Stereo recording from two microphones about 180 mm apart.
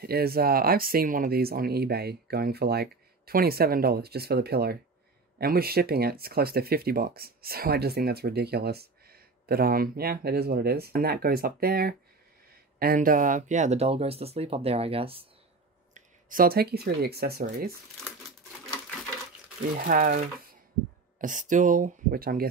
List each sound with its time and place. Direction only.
0.0 s speech: 60° right (ahead or behind); by 15.2 s 30° right (ahead or behind)
15.9 s speech: 50° right (ahead or behind)
19.8 s speech: 50° right (ahead or behind)
21.2 s speech: 45° right (ahead or behind)